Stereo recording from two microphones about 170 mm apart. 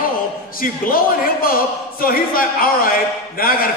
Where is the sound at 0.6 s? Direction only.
55° left (ahead or behind).